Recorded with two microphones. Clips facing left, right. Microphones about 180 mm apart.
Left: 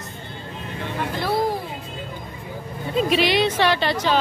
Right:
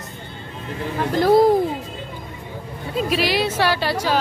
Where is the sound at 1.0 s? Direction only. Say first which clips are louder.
Right 9 dB; 45° right (ahead or behind).